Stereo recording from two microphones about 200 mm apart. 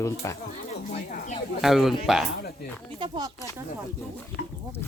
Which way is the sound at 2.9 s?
25° right (ahead or behind).